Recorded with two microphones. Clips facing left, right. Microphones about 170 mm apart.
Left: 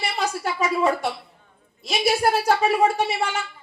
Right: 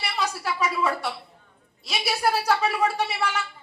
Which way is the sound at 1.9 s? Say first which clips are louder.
Left 5 dB; 50° left (ahead or behind).